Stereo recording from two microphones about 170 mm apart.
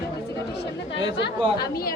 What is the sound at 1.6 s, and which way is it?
Speech, 65° left (ahead or behind).